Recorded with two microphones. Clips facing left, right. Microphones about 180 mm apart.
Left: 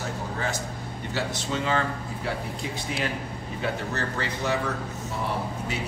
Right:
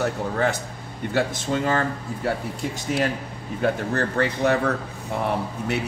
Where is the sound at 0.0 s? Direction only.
60° right (ahead or behind).